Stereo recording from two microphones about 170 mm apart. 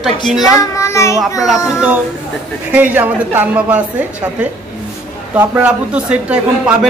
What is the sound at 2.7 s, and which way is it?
A man's voice, 10° right (ahead or behind).